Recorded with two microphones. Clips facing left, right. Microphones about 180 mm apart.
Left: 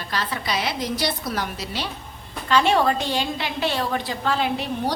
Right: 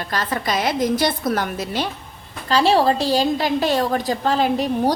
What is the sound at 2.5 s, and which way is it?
A woman's voice, 35° right (ahead or behind).